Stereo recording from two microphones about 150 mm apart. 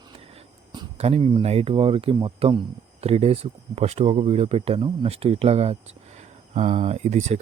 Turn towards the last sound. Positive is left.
turn(degrees=-50)  # may be behind; listen again after turning